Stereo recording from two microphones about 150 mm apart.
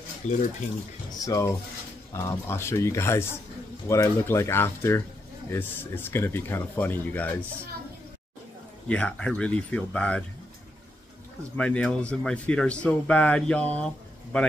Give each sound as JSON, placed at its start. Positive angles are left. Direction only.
{"t": 0.2, "sound": "speech", "side_deg": 55}
{"t": 1.2, "sound": "speech", "side_deg": 20}
{"t": 8.8, "sound": "speech", "side_deg": 5}
{"t": 11.5, "sound": "speech", "side_deg": 10}